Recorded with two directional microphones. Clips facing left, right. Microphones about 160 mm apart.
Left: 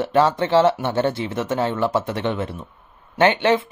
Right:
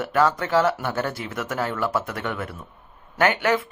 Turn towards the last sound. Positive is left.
turn(degrees=25)  # may be behind; listen again after turning